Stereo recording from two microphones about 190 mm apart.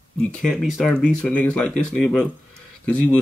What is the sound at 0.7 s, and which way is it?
Speech, 5° left (ahead or behind).